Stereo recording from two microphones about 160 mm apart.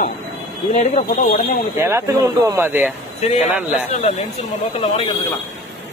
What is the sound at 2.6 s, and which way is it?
Speech, 10° right (ahead or behind).